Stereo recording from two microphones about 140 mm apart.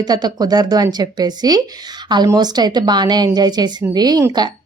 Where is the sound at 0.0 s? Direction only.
30° right (ahead or behind).